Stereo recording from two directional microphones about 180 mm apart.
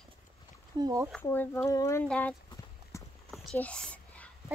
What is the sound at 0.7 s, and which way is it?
Speech, 20° right (ahead or behind).